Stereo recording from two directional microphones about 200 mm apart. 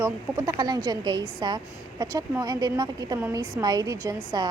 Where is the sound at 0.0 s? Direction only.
15° right (ahead or behind).